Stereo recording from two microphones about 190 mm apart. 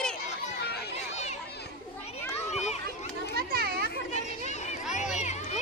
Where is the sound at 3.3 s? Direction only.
55° right (ahead or behind).